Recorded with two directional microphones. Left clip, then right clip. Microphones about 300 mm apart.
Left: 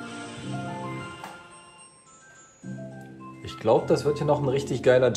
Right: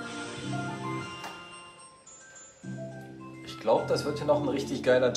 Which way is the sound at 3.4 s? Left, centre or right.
Left.